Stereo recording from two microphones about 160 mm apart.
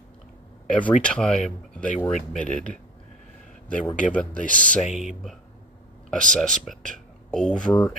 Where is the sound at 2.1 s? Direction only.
50° left (ahead or behind).